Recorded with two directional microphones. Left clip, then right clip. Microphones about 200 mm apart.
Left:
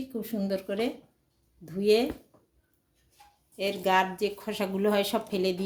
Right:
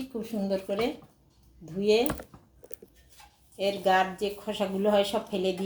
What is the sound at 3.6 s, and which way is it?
Speech, 35° left (ahead or behind).